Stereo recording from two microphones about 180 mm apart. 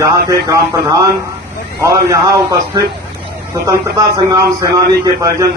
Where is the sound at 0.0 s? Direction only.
20° right (ahead or behind).